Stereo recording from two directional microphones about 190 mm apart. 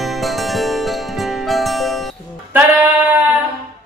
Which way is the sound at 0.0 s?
Centre (ahead or behind).